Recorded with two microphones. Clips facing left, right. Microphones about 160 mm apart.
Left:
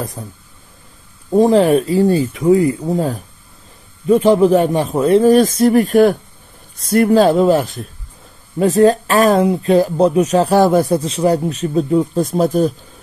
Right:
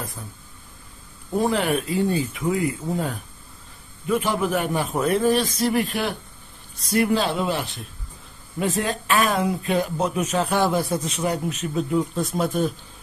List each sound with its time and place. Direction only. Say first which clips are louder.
1.4 s speech: left 11 dB; 35° left (ahead or behind)
5.6 s speech: left 12 dB; 45° left (ahead or behind)
11.0 s speech: left 10 dB; 30° left (ahead or behind)